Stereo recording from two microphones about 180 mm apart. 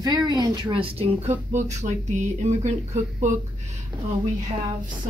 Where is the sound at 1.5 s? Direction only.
40° right (ahead or behind).